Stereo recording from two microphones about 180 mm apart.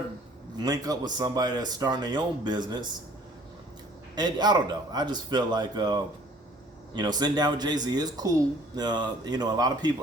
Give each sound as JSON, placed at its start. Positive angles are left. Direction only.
{"t": 0.5, "sound": "speech", "side_deg": -20}
{"t": 4.1, "sound": "speech", "side_deg": -20}